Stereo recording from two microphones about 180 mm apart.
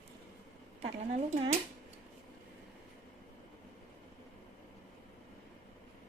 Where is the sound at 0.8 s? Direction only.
40° right (ahead or behind).